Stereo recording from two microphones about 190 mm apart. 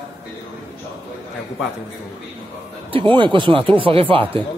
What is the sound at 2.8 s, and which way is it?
Speech, 25° right (ahead or behind).